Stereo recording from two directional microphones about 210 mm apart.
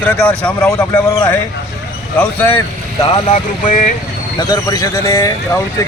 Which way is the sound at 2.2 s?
10° left (ahead or behind).